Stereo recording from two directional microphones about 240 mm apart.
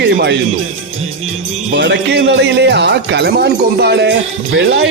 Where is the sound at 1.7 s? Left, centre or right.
Right.